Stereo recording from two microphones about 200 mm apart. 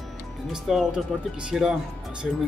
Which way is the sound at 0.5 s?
Centre (ahead or behind).